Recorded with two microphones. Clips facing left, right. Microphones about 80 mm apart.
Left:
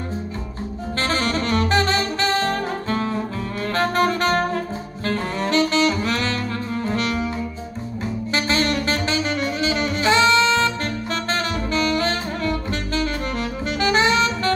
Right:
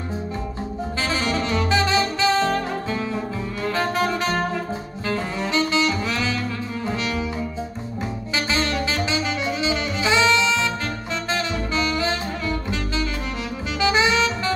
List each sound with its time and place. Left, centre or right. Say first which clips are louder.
1.0 s saxophone: left 2 dB; left
3.7 s music: left 4 dB; left
5.0 s saxophone: left 2 dB; left
9.6 s music: left 2 dB; left
11.7 s saxophone: left 3 dB; left